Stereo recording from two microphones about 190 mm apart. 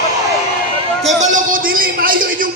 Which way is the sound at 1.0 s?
40° right (ahead or behind).